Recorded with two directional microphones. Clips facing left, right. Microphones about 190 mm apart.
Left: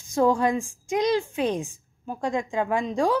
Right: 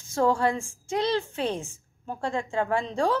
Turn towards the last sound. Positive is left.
turn(degrees=15)  # may be behind; listen again after turning